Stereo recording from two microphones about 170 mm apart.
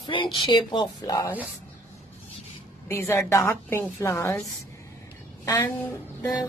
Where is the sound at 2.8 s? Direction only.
15° left (ahead or behind).